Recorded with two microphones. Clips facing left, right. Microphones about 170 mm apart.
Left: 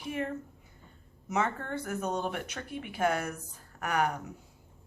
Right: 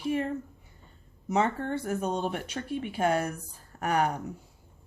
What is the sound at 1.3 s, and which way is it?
Speech, 30° right (ahead or behind).